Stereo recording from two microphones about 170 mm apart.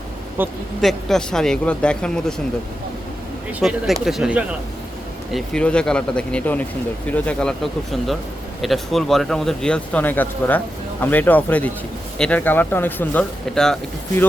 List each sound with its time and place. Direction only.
0.4 s speech: 10° right (ahead or behind)
0.8 s speech: centre (ahead or behind)
3.6 s speech: centre (ahead or behind)
5.3 s speech: 5° left (ahead or behind)